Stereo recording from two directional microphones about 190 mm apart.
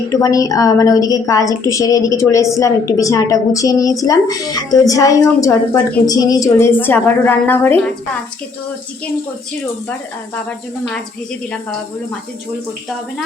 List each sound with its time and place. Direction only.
0.1 s a woman's voice: 20° left (ahead or behind)